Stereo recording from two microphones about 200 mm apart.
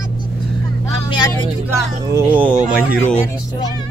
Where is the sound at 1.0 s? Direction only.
20° left (ahead or behind).